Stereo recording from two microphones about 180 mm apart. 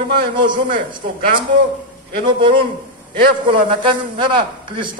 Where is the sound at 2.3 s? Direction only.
30° right (ahead or behind).